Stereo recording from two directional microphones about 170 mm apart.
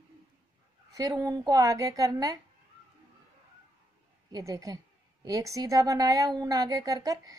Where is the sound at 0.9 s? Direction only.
20° right (ahead or behind).